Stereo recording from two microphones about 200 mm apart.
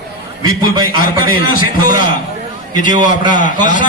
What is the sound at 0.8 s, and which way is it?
Speech, 45° left (ahead or behind).